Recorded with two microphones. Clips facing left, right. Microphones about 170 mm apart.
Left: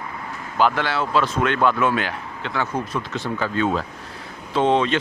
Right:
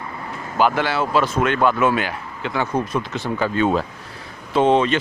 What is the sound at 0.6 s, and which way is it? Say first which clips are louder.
Speech: right 2 dB; 10° right (ahead or behind).